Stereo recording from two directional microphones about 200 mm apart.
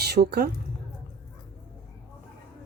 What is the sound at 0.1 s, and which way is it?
Speech, 55° right (ahead or behind).